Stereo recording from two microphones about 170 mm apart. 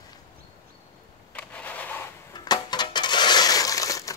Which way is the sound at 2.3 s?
25° left (ahead or behind).